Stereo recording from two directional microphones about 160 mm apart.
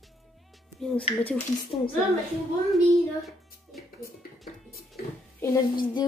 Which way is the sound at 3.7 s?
Centre (ahead or behind).